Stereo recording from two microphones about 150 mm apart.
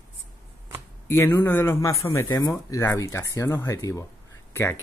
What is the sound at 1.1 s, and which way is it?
Speech, 15° left (ahead or behind).